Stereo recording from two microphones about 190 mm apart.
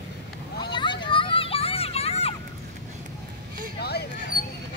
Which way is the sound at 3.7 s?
60° left (ahead or behind).